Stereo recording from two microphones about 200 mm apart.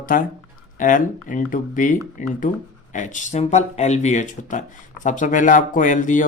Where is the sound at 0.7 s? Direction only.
40° left (ahead or behind).